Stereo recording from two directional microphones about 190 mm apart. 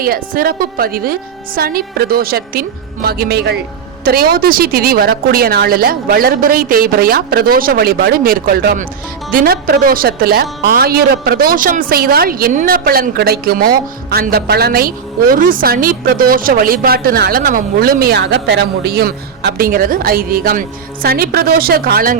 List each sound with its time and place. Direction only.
0.0 s speech: 50° right (ahead or behind)